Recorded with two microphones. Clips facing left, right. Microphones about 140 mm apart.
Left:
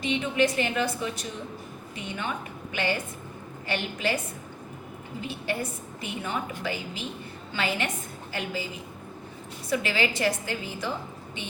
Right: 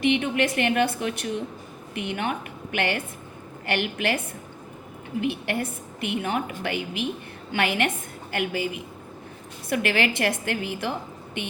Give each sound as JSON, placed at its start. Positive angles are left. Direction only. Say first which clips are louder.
{"t": 0.0, "sound": "a woman's voice", "louder": "right 3 dB", "side_deg": -65}
{"t": 2.0, "sound": "a woman's voice", "louder": "right 5 dB", "side_deg": -65}
{"t": 5.2, "sound": "a woman's voice", "louder": "right 4 dB", "side_deg": -65}